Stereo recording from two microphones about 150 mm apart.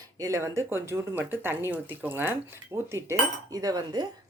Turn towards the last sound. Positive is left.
turn(degrees=-25)  # may be behind; listen again after turning